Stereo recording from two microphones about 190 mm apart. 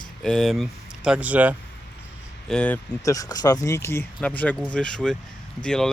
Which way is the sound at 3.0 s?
20° left (ahead or behind).